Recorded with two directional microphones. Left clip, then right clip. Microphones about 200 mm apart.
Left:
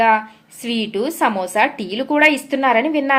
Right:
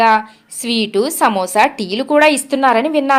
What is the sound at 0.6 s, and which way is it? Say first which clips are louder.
A woman's voice: right 5 dB; 35° right (ahead or behind).